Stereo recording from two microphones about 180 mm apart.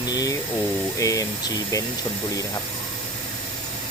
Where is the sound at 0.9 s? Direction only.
20° left (ahead or behind).